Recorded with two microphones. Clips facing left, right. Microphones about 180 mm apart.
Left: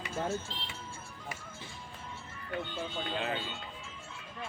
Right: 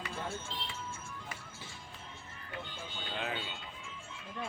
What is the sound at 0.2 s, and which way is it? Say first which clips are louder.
Speech: left 9 dB; 40° left (ahead or behind).